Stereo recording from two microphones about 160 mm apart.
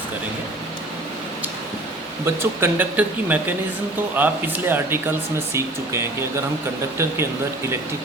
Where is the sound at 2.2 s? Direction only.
15° right (ahead or behind).